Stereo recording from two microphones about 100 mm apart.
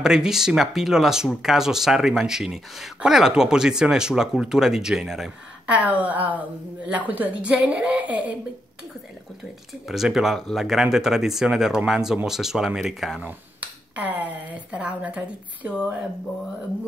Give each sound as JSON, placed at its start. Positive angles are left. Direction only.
{"t": 0.0, "sound": "speech", "side_deg": -5}
{"t": 5.7, "sound": "speech", "side_deg": -15}
{"t": 9.8, "sound": "speech", "side_deg": -5}
{"t": 13.2, "sound": "speech", "side_deg": -15}